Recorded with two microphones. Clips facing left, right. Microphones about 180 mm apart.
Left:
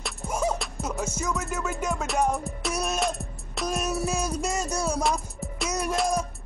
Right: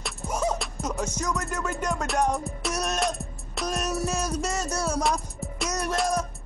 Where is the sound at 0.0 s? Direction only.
5° left (ahead or behind).